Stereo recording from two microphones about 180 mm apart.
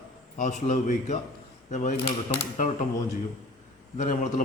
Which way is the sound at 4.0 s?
40° left (ahead or behind).